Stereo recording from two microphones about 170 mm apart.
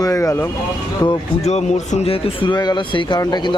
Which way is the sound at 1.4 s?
40° left (ahead or behind).